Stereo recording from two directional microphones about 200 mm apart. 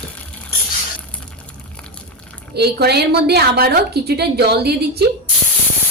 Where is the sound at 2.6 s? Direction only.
55° right (ahead or behind).